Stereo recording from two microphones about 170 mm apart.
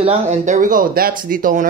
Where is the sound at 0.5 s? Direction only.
55° right (ahead or behind).